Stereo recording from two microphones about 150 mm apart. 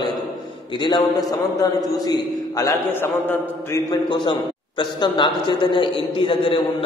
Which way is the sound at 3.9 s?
30° left (ahead or behind).